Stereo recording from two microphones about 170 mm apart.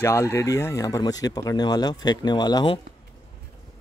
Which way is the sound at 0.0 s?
15° left (ahead or behind).